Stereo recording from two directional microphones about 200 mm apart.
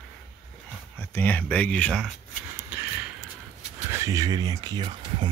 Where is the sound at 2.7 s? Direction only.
10° right (ahead or behind).